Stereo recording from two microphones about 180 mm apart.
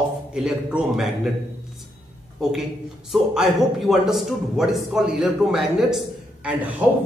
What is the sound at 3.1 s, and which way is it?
A man's voice, centre (ahead or behind).